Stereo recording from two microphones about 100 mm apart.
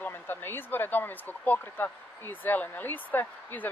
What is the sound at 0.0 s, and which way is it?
Speech, 20° left (ahead or behind).